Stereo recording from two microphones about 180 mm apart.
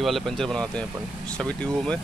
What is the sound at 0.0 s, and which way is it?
Speech, centre (ahead or behind).